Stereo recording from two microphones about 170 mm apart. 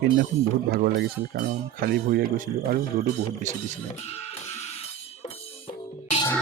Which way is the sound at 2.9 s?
45° right (ahead or behind).